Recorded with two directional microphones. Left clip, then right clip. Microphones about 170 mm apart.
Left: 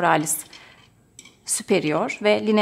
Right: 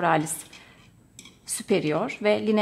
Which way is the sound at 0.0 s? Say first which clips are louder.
Left 3 dB; 20° left (ahead or behind).